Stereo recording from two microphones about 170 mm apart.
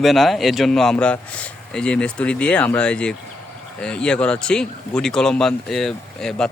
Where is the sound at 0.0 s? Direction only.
Centre (ahead or behind).